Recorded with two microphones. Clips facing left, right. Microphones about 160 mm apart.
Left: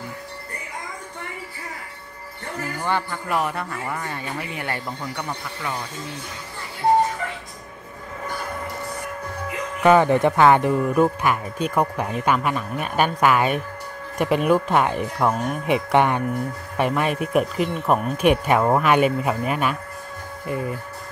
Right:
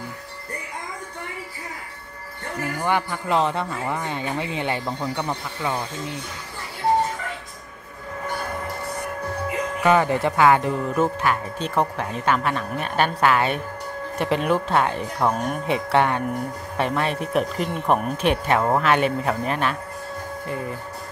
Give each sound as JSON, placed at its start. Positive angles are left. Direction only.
{"t": 2.8, "sound": "speech", "side_deg": -15}
{"t": 9.8, "sound": "speech", "side_deg": 20}